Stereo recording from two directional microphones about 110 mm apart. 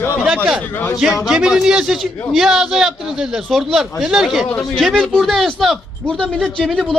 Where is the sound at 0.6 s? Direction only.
15° left (ahead or behind).